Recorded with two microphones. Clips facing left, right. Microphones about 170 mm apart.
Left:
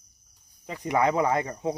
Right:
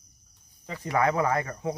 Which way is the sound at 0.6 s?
15° left (ahead or behind).